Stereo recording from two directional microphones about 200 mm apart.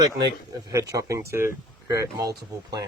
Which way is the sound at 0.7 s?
15° right (ahead or behind).